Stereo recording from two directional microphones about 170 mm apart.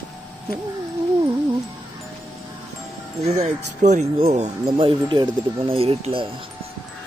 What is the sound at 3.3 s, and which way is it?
Speech, 45° right (ahead or behind).